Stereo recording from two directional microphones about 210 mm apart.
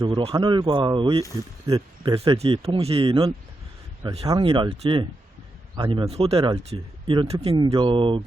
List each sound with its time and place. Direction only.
0.0 s speech: 25° right (ahead or behind)